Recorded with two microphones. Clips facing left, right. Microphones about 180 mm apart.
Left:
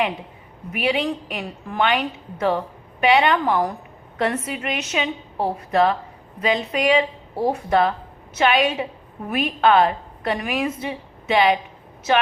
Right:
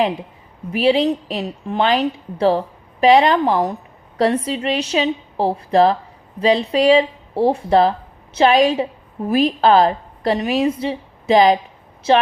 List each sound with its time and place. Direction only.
0.7 s a woman's voice: 30° right (ahead or behind)